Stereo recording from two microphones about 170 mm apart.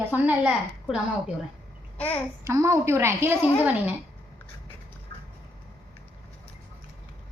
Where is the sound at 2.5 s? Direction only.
20° right (ahead or behind).